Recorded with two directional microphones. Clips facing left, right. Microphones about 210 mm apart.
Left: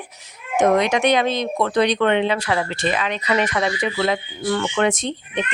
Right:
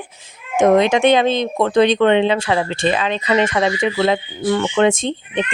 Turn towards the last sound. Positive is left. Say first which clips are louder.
# right 4 dB
turn(degrees=-25)  # may be behind; listen again after turning